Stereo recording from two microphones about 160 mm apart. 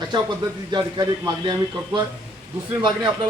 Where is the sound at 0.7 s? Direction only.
25° right (ahead or behind).